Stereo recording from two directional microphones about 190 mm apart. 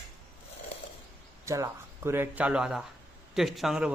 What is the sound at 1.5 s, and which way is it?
Speech, 15° right (ahead or behind).